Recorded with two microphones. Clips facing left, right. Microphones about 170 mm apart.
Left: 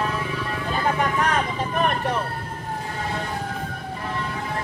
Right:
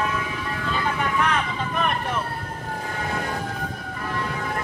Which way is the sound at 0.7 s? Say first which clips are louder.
Left 3 dB; 40° left (ahead or behind).